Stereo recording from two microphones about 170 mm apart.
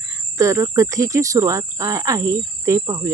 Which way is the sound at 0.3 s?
15° right (ahead or behind).